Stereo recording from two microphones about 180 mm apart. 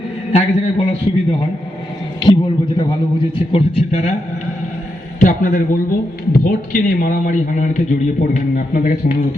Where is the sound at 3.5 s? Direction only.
35° left (ahead or behind).